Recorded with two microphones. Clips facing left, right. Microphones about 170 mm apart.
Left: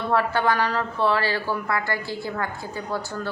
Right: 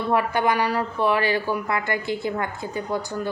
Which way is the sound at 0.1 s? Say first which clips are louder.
Even; 15° right (ahead or behind).